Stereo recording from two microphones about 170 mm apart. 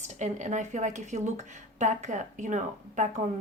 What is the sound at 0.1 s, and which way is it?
A woman's voice, 45° right (ahead or behind).